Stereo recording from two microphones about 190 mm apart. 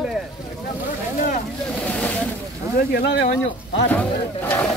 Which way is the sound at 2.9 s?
60° left (ahead or behind).